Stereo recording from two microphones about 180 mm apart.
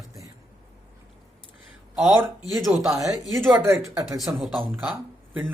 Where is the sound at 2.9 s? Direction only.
20° right (ahead or behind).